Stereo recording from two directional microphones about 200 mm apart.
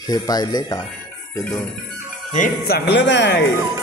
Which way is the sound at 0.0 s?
20° left (ahead or behind).